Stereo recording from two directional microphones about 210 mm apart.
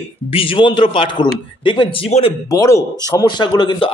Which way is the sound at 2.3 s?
15° left (ahead or behind).